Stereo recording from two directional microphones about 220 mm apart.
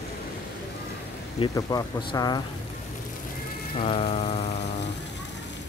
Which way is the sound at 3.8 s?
25° left (ahead or behind).